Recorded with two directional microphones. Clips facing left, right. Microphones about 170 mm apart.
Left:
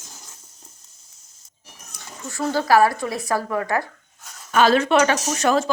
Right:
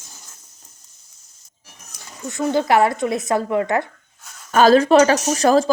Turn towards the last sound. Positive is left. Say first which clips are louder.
# right 5 dB
turn(degrees=-35)  # may be behind; listen again after turning